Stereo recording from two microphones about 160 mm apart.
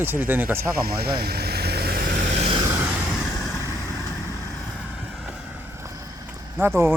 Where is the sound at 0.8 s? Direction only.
75° right (ahead or behind); by 2.4 s 50° right (ahead or behind).